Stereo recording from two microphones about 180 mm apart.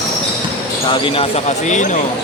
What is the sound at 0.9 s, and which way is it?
Speech, 30° left (ahead or behind).